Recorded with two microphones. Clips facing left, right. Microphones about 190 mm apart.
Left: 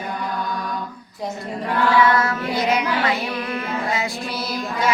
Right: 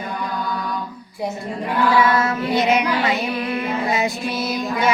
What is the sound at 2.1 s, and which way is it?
Mantra, 20° right (ahead or behind).